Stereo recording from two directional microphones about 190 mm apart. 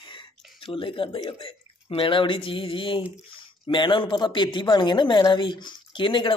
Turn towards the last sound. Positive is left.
turn(degrees=25)  # may be behind; listen again after turning